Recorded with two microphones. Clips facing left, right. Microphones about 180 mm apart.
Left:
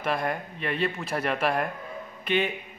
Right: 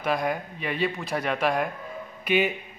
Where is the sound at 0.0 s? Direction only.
Centre (ahead or behind).